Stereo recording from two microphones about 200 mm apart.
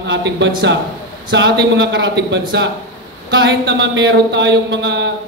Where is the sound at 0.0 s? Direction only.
60° right (ahead or behind).